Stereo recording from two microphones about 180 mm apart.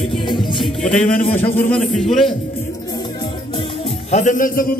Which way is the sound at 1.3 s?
10° left (ahead or behind).